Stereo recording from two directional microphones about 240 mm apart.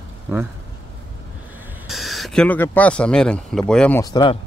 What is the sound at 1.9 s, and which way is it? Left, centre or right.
Speech, centre.